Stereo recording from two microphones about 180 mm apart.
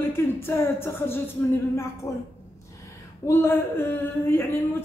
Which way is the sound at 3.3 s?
15° left (ahead or behind).